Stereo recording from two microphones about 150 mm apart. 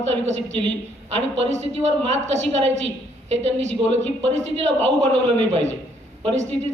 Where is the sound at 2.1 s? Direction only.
45° right (ahead or behind).